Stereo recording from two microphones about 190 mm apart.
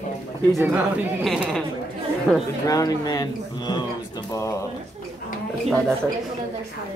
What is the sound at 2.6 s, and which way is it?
Speech, 20° left (ahead or behind).